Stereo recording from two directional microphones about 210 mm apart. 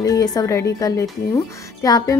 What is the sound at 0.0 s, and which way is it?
Speech, 15° left (ahead or behind).